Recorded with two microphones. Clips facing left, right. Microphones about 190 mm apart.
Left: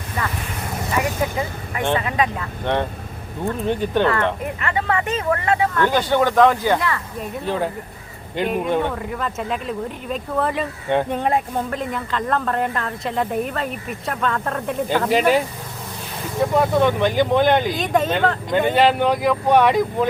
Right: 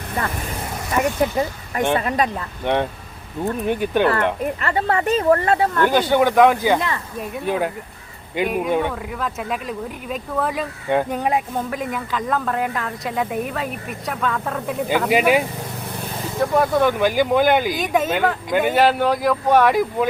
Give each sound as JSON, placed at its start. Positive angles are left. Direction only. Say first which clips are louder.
{"t": 1.0, "sound": "speech", "louder": "right 3 dB", "side_deg": 0}
{"t": 2.0, "sound": "speech", "louder": "right 1 dB", "side_deg": -35}
{"t": 2.7, "sound": "speech", "louder": "right 1 dB", "side_deg": -15}
{"t": 4.6, "sound": "speech", "louder": "right 1 dB", "side_deg": -35}
{"t": 5.8, "sound": "speech", "louder": "right 2 dB", "side_deg": -10}
{"t": 6.7, "sound": "speech", "louder": "even", "side_deg": -25}
{"t": 7.4, "sound": "speech", "louder": "right 1 dB", "side_deg": -10}
{"t": 16.5, "sound": "speech", "louder": "even", "side_deg": 0}
{"t": 19.2, "sound": "speech", "louder": "even", "side_deg": 15}
{"t": 19.6, "sound": "speech", "louder": "even", "side_deg": -5}